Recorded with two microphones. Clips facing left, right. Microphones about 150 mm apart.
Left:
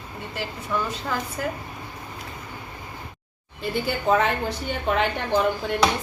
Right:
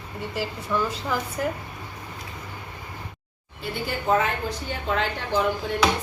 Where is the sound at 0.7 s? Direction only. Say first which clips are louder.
Right 1 dB; centre (ahead or behind).